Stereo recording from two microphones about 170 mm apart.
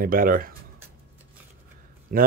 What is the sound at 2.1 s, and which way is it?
Speech, 60° right (ahead or behind).